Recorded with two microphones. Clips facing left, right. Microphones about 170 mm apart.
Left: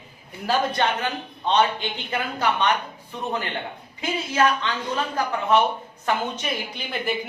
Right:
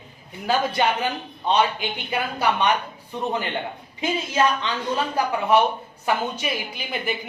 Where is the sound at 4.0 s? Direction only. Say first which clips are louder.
Right 1 dB; 20° right (ahead or behind).